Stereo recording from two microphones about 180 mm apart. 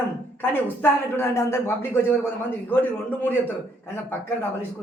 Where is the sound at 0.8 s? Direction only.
15° left (ahead or behind).